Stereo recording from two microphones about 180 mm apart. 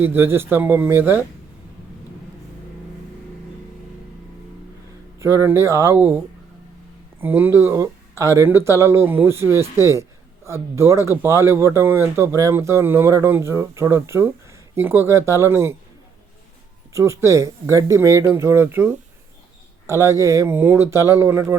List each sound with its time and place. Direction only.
0.0 s speech: 10° right (ahead or behind)
5.2 s speech: 15° right (ahead or behind)
7.2 s speech: 10° right (ahead or behind)
16.9 s speech: 15° right (ahead or behind)